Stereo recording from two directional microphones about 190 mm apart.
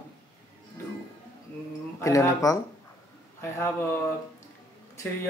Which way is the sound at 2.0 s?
15° left (ahead or behind).